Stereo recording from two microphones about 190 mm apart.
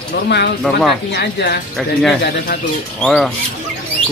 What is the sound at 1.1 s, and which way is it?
Speech, 60° left (ahead or behind).